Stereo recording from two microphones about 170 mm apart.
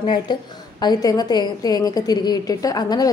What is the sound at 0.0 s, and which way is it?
A woman's voice, 25° left (ahead or behind).